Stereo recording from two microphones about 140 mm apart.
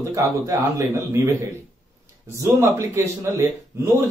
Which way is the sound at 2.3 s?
20° right (ahead or behind).